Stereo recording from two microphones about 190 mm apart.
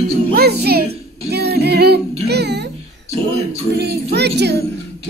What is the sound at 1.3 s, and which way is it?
Singing, 60° right (ahead or behind).